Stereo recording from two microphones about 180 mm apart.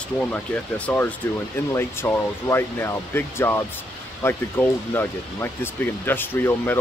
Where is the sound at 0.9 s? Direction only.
10° left (ahead or behind).